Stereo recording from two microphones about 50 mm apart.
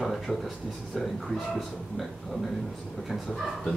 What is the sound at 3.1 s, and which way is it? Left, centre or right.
Speech, centre.